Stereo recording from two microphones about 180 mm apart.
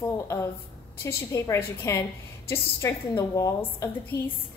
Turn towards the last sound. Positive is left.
turn(degrees=15)  # may be behind; listen again after turning